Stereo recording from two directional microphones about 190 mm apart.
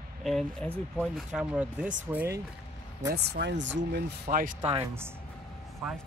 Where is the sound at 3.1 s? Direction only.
60° right (ahead or behind).